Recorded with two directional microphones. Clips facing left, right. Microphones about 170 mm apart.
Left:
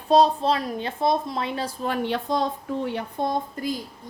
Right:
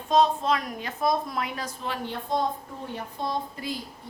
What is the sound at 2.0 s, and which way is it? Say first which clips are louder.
Speech: left 1 dB; 85° left.